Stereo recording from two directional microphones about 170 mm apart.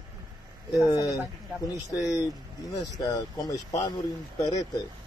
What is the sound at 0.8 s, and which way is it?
Speech, 20° left (ahead or behind).